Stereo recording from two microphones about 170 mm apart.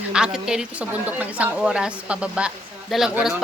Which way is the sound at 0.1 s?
5° right (ahead or behind).